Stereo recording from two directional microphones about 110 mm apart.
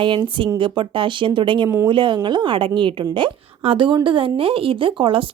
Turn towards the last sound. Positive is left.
turn(degrees=-50)  # may be behind; listen again after turning